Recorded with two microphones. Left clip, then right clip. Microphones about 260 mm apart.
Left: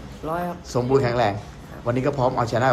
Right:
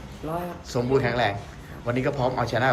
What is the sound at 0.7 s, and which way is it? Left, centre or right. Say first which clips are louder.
Speech: left 3 dB; centre.